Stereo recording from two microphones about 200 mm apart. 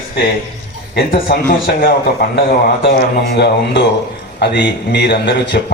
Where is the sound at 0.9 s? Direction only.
45° left (ahead or behind).